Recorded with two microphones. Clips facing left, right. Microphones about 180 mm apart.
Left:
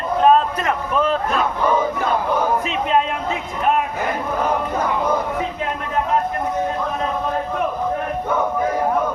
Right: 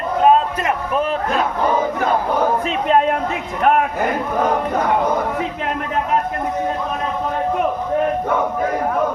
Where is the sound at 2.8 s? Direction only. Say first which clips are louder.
Right 5 dB; 50° right (ahead or behind).